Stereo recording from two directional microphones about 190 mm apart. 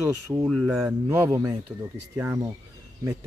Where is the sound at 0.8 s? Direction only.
15° right (ahead or behind).